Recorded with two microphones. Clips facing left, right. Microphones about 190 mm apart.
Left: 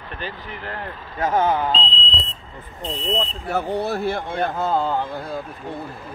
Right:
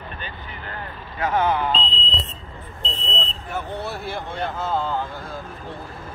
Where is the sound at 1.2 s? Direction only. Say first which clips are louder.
Left 2 dB; 45° left (ahead or behind).